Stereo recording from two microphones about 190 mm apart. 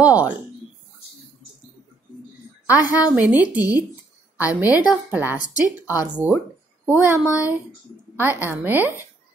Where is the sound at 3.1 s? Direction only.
10° right (ahead or behind).